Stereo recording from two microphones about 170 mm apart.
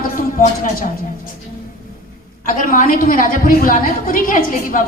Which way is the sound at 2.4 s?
50° left (ahead or behind).